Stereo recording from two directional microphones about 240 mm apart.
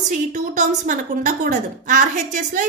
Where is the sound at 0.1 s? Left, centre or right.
Right.